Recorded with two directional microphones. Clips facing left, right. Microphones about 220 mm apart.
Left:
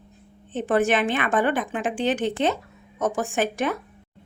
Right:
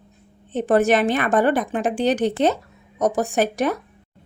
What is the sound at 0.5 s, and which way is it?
Speech, 40° right (ahead or behind).